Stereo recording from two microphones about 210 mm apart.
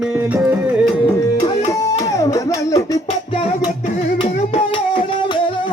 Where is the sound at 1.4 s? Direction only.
30° left (ahead or behind).